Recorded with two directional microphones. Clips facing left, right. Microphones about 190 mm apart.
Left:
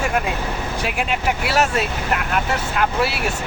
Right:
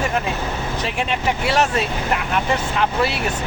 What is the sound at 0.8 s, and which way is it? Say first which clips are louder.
Speech: even; 5° left (ahead or behind).